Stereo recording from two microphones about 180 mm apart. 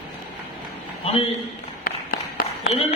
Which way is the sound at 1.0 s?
35° left (ahead or behind).